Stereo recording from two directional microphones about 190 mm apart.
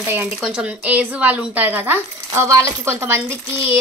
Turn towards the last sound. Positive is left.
turn(degrees=-15)  # may be behind; listen again after turning